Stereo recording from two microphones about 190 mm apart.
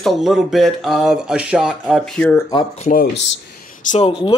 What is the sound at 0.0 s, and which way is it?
Speech, centre (ahead or behind).